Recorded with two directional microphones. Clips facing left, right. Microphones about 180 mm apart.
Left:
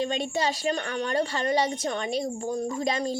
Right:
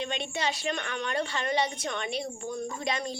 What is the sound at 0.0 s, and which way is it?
A woman's voice, 40° left (ahead or behind).